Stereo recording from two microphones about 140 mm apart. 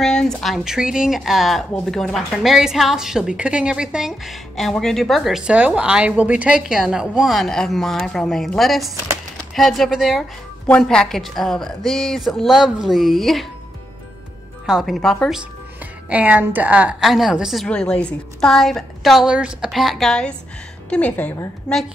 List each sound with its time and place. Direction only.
0.0 s speech: 5° left (ahead or behind)
14.7 s speech: centre (ahead or behind)
16.1 s a woman's voice: 10° right (ahead or behind); by 21.3 s 10° left (ahead or behind)